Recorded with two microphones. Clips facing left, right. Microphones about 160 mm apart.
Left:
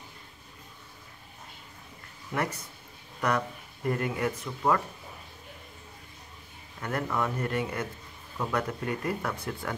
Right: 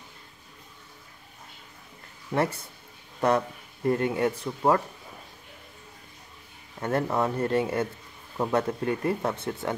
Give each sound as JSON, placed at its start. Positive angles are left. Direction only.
{"t": 2.3, "sound": "speech", "side_deg": -30}
{"t": 6.8, "sound": "speech", "side_deg": -30}